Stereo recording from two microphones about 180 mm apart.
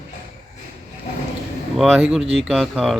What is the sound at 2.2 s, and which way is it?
Speech, 35° right (ahead or behind).